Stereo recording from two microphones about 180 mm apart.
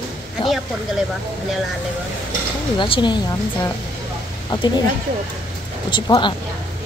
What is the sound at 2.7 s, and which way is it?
Speech, 30° left (ahead or behind).